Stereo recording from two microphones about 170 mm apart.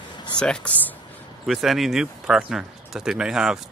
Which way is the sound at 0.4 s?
5° left (ahead or behind).